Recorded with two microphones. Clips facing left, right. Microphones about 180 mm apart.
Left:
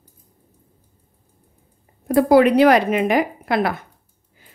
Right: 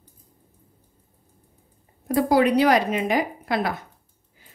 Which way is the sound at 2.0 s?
55° left (ahead or behind).